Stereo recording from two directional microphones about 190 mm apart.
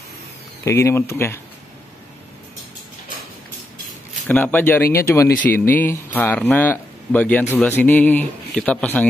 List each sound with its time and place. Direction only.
0.7 s speech: 15° left (ahead or behind)
4.3 s speech: 10° left (ahead or behind)